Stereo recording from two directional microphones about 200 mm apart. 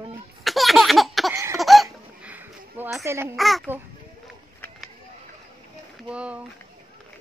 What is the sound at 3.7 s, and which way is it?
Speech, 10° right (ahead or behind).